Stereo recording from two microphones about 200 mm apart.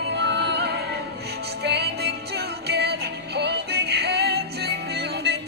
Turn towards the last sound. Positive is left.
turn(degrees=-55)  # may be behind; listen again after turning